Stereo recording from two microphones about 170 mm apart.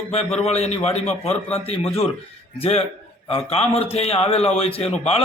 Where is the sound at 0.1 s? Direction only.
40° left (ahead or behind).